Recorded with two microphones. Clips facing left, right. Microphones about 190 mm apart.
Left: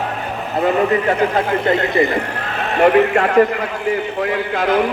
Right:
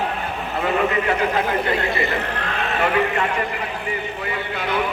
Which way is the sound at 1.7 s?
20° left (ahead or behind).